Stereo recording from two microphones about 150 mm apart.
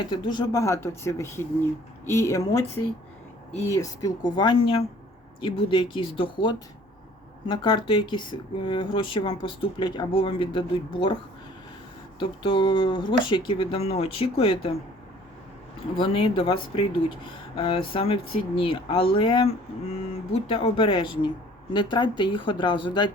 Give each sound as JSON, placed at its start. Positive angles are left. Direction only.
{"t": 0.0, "sound": "speech", "side_deg": 30}
{"t": 3.7, "sound": "speech", "side_deg": 20}
{"t": 12.2, "sound": "speech", "side_deg": 35}
{"t": 16.0, "sound": "speech", "side_deg": 35}